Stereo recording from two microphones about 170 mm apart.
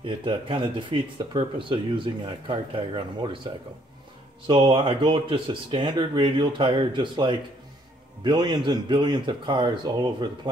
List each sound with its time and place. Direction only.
0.0 s speech: 30° right (ahead or behind)
4.5 s speech: 30° right (ahead or behind)